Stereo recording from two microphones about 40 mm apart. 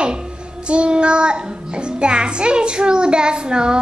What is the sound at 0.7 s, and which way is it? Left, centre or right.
Child singing, right.